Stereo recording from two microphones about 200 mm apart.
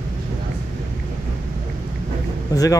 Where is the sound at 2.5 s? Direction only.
15° left (ahead or behind).